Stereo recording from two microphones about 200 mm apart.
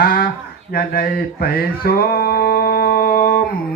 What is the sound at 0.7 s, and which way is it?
Music, 50° left (ahead or behind).